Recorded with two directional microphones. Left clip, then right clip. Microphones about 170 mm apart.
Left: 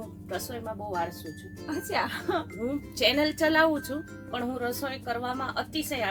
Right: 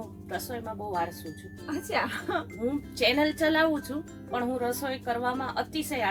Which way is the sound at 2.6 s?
20° left (ahead or behind).